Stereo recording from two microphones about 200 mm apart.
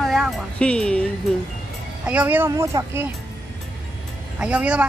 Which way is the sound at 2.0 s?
10° right (ahead or behind).